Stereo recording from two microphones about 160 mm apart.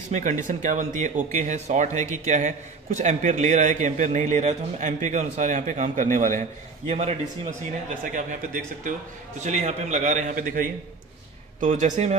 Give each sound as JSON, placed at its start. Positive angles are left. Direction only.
{"t": 0.1, "sound": "speech", "side_deg": -50}
{"t": 6.9, "sound": "a man's voice", "side_deg": -40}
{"t": 8.0, "sound": "speech", "side_deg": -55}